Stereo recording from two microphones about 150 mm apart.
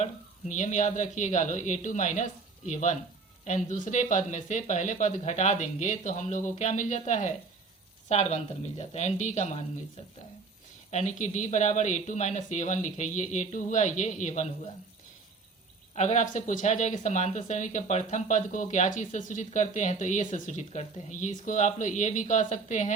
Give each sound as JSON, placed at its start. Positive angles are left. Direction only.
{"t": 0.0, "sound": "speech", "side_deg": 55}
{"t": 10.9, "sound": "speech", "side_deg": 55}
{"t": 16.0, "sound": "speech", "side_deg": 55}